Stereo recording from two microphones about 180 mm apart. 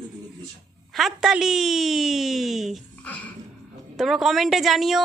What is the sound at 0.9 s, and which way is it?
A woman's voice, centre (ahead or behind).